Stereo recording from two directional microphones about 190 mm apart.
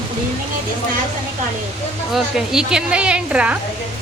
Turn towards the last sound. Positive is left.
turn(degrees=-5)  # may be behind; listen again after turning